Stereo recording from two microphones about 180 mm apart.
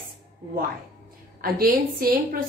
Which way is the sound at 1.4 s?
55° right (ahead or behind).